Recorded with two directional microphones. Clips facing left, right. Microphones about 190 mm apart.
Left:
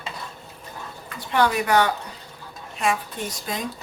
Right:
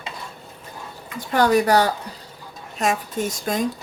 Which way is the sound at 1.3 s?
40° right (ahead or behind).